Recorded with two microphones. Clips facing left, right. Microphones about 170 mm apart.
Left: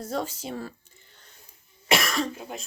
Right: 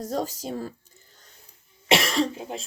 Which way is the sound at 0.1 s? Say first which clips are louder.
Right 1 dB; 40° right (ahead or behind).